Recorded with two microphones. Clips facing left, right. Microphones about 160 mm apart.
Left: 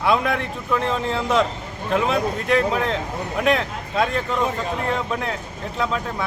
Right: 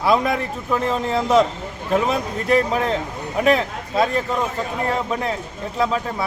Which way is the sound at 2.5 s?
5° right (ahead or behind).